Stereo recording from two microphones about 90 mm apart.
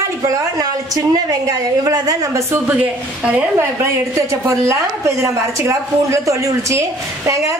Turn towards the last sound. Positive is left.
turn(degrees=-35)  # may be behind; listen again after turning